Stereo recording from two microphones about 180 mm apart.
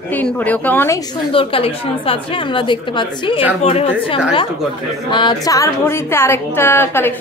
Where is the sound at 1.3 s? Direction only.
30° left (ahead or behind).